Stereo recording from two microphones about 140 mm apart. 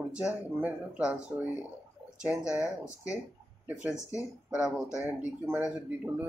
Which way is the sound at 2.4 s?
20° left (ahead or behind).